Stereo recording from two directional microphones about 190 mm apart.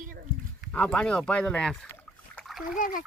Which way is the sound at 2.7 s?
45° left (ahead or behind).